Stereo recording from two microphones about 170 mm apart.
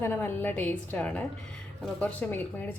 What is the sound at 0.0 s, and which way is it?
A woman's voice, 10° left (ahead or behind).